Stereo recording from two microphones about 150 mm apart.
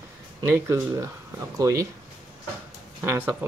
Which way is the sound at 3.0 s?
10° right (ahead or behind).